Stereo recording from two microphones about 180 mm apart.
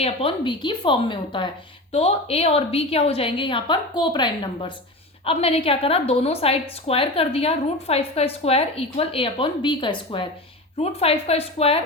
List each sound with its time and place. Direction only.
0.0 s a woman's voice: 30° left (ahead or behind)